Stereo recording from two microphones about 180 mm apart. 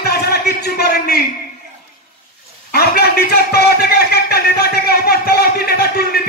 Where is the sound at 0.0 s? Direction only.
60° left (ahead or behind).